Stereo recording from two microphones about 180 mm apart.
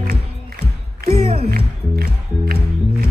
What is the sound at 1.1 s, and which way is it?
Music, 35° right (ahead or behind).